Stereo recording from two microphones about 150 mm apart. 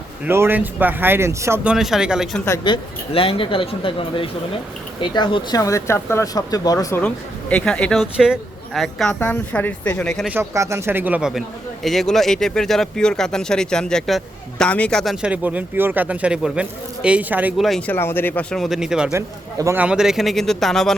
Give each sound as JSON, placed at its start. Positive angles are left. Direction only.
{"t": 0.3, "sound": "speech", "side_deg": -15}
{"t": 1.7, "sound": "speech", "side_deg": -5}
{"t": 2.6, "sound": "speech", "side_deg": 35}
{"t": 7.5, "sound": "speech", "side_deg": 5}
{"t": 8.1, "sound": "speech", "side_deg": -5}
{"t": 10.3, "sound": "speech", "side_deg": -20}
{"t": 17.6, "sound": "speech", "side_deg": 5}
{"t": 18.6, "sound": "speech", "side_deg": -5}
{"t": 19.1, "sound": "speech", "side_deg": -20}